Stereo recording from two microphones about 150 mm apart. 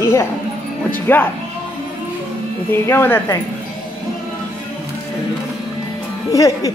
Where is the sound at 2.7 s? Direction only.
15° left (ahead or behind).